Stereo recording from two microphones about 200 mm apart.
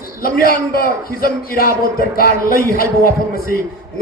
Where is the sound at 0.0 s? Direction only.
45° left (ahead or behind).